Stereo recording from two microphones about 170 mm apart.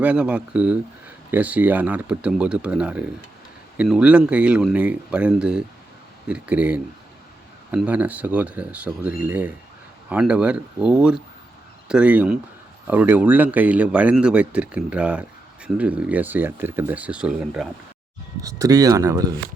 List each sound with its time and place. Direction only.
0.0 s speech: 5° right (ahead or behind)
18.4 s speech: 20° right (ahead or behind)